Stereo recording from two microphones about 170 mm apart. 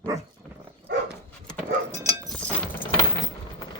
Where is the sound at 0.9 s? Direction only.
80° right.